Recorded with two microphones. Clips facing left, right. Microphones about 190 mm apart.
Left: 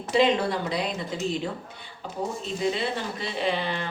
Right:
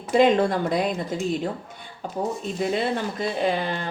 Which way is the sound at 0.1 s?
50° right (ahead or behind).